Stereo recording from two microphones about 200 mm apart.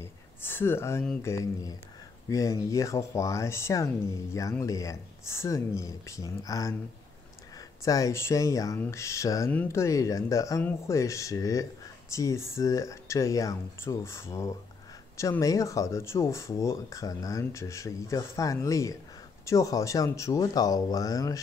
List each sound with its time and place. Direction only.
0.0 s speech: 10° left (ahead or behind)